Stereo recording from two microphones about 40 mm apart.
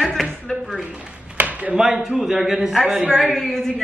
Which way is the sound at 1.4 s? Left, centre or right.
Right.